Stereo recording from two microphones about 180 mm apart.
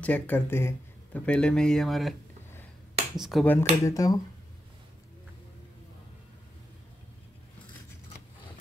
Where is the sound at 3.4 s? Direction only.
15° left (ahead or behind).